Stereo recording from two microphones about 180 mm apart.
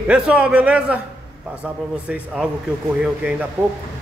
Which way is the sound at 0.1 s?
5° right (ahead or behind).